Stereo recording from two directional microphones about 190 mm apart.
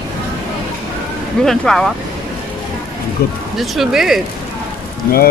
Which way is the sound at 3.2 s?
55° left (ahead or behind).